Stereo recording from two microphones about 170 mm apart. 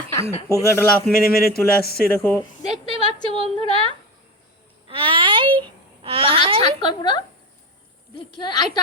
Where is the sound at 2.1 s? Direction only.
15° left (ahead or behind).